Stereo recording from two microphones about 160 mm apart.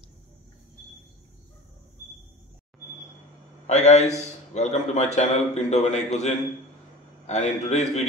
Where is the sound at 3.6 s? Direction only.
45° left (ahead or behind).